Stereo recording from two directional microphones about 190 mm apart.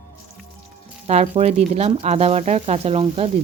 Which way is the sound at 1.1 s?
35° right (ahead or behind).